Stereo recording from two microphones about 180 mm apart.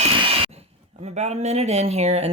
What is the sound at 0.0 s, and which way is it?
Speech, 35° right (ahead or behind).